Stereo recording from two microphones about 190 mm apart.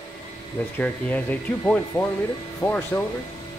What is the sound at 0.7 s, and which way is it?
Speech, 5° left (ahead or behind).